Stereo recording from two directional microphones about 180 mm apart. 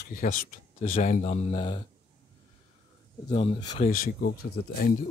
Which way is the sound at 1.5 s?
25° left (ahead or behind).